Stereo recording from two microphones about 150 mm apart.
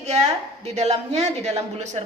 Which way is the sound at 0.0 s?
50° right (ahead or behind).